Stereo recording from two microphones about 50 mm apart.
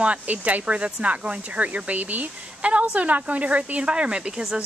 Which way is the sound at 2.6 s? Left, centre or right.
Right.